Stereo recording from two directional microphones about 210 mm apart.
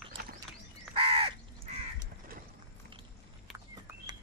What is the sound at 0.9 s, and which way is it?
Crow, 25° right (ahead or behind).